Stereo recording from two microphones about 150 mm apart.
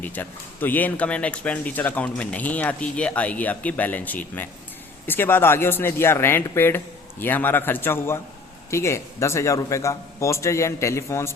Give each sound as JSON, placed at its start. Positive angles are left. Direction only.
{"t": 0.0, "sound": "speech", "side_deg": 10}